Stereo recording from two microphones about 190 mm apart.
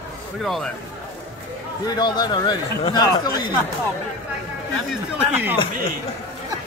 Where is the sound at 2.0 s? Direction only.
20° left (ahead or behind).